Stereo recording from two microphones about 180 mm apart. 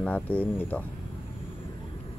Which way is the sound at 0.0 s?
10° left (ahead or behind).